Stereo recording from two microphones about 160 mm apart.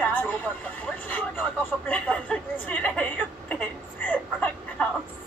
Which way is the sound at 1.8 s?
10° left (ahead or behind).